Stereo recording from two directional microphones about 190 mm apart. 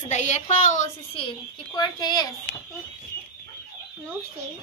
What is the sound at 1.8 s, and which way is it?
Speech, 20° left (ahead or behind).